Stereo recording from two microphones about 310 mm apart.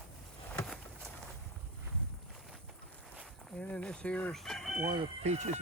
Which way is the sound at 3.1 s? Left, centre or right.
Centre.